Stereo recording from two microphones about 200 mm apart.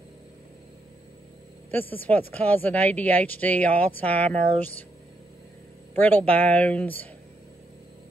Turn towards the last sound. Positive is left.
turn(degrees=10)  # may be behind; listen again after turning